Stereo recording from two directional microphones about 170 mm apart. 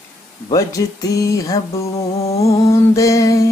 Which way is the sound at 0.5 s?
20° left (ahead or behind).